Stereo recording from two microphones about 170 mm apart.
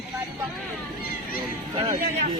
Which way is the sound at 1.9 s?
50° right (ahead or behind).